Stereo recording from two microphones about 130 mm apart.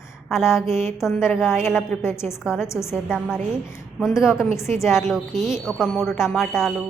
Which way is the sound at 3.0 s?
5° right (ahead or behind).